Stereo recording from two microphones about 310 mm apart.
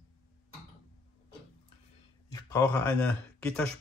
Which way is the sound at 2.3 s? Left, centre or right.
Centre.